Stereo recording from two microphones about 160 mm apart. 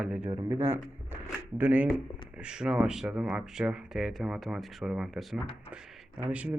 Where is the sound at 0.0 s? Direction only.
10° right (ahead or behind).